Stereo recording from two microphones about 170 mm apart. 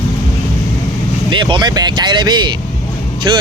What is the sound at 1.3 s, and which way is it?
Speech, 30° right (ahead or behind).